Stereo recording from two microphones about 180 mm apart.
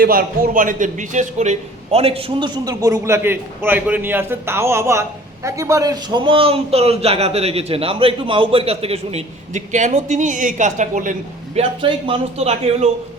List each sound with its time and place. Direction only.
0.0 s a man's voice: 55° right (ahead or behind); by 2.5 s 30° right (ahead or behind)
2.6 s a man's voice: 15° right (ahead or behind); by 11.1 s 45° right (ahead or behind)
11.5 s a man's voice: 30° right (ahead or behind)